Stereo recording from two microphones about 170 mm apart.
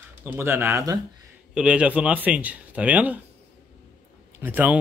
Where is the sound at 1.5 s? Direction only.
5° right (ahead or behind).